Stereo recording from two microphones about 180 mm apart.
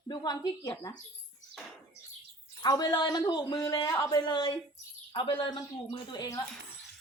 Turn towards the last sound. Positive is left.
turn(degrees=20)  # may be behind; listen again after turning